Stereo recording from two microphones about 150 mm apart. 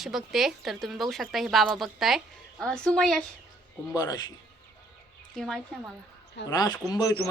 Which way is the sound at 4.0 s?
25° left (ahead or behind).